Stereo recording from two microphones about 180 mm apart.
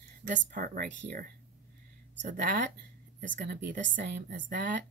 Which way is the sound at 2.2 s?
45° right (ahead or behind).